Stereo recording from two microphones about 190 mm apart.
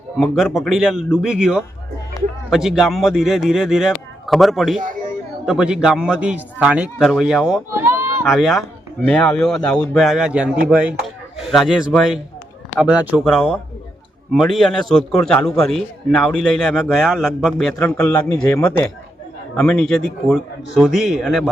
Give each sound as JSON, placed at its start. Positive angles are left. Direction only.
{"t": 0.5, "sound": "a man's voice", "side_deg": 0}
{"t": 7.7, "sound": "run", "side_deg": -15}
{"t": 8.3, "sound": "a man's voice", "side_deg": 0}